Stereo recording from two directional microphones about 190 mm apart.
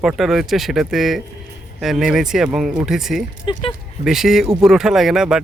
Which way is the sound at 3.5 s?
25° left (ahead or behind).